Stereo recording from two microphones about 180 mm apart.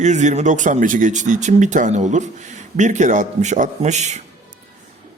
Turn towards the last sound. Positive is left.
turn(degrees=-40)  # may be behind; listen again after turning